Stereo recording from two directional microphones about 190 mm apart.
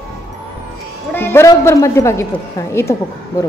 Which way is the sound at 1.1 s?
10° left (ahead or behind).